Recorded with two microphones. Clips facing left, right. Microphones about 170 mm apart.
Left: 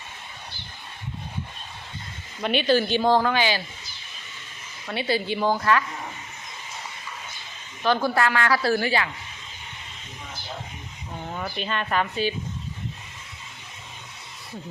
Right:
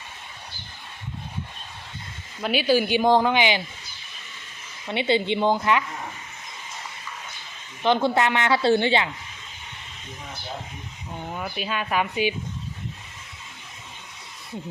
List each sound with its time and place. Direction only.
2.4 s speech: 5° right (ahead or behind)
4.9 s a woman's voice: 20° right (ahead or behind)
7.8 s a woman's voice: 20° right (ahead or behind)
11.3 s speech: 5° right (ahead or behind)